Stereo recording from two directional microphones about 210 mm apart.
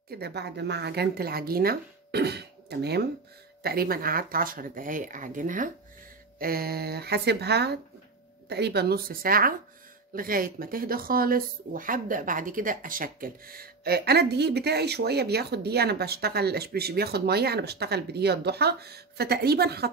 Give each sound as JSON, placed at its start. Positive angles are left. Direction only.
{"t": 0.1, "sound": "speech", "side_deg": -50}